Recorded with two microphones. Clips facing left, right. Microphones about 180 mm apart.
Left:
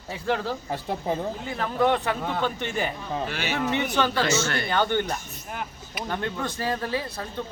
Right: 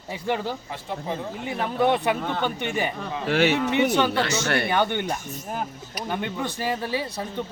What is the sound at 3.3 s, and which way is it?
Speech, 70° right (ahead or behind).